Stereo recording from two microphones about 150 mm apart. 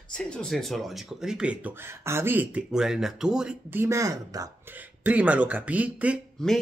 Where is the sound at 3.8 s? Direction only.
20° right (ahead or behind).